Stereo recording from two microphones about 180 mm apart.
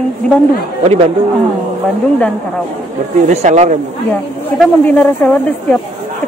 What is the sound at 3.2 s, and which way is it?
Speech, 40° right (ahead or behind).